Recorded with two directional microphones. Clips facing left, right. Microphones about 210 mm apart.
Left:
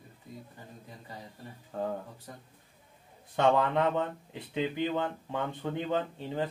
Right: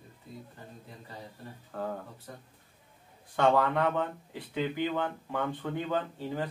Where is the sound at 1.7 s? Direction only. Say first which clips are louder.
Left 2 dB; 20° left (ahead or behind).